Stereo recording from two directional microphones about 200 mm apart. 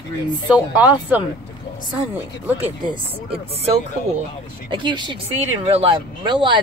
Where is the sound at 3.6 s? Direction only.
30° right (ahead or behind).